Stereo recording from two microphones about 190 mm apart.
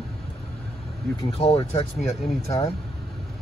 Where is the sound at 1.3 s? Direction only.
35° left (ahead or behind).